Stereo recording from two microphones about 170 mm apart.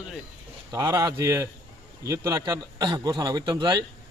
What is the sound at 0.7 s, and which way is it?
A man's voice, 20° right (ahead or behind).